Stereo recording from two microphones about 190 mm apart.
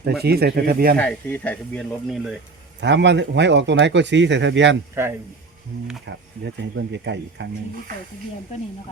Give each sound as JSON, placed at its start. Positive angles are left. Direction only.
{"t": 0.2, "sound": "speech", "side_deg": -60}
{"t": 0.9, "sound": "speech", "side_deg": 10}
{"t": 2.8, "sound": "speech", "side_deg": -65}
{"t": 6.1, "sound": "speech", "side_deg": -70}